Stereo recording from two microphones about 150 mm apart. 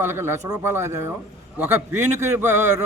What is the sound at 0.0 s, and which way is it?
Speech, 15° right (ahead or behind).